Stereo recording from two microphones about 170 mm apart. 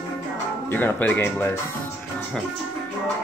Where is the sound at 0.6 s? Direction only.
10° left (ahead or behind).